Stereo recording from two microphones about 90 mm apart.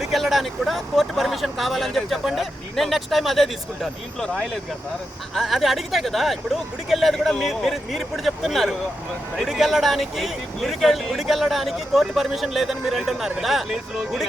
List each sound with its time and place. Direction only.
0.0 s speech: centre (ahead or behind)
5.3 s speech: centre (ahead or behind)